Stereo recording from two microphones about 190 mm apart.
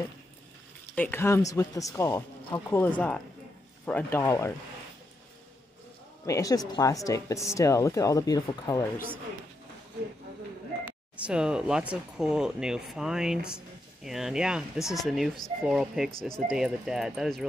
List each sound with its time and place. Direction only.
0.9 s speech: 10° left (ahead or behind)
6.2 s speech: 15° left (ahead or behind)
10.9 s speech: 5° right (ahead or behind)